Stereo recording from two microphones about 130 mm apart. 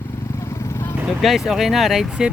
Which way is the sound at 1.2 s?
Centre (ahead or behind).